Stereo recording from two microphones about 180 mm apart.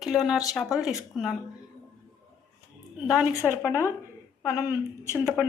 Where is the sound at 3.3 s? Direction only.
15° left (ahead or behind).